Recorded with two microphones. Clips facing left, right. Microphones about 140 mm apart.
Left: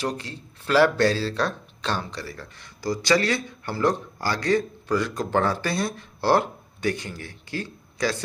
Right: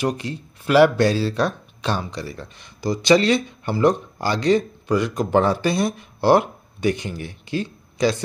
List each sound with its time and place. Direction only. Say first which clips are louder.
0.0 s speech: right 5 dB; 15° right (ahead or behind)